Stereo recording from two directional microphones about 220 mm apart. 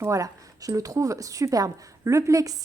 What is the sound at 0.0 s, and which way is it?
Speech, 15° right (ahead or behind).